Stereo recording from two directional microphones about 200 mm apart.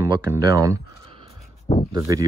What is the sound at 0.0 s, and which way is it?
Speech, 15° right (ahead or behind).